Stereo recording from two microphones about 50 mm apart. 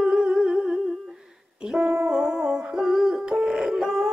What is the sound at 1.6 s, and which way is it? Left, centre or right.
Music, centre.